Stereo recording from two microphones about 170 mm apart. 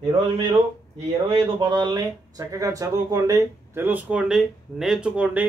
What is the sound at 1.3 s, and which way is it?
Speech, 25° right (ahead or behind).